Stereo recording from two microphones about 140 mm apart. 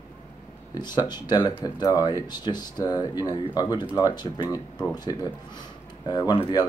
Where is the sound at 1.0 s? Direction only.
30° left (ahead or behind).